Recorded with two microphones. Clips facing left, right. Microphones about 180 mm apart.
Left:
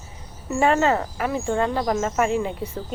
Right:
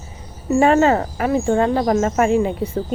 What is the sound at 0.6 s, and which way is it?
A woman's voice, 45° right (ahead or behind).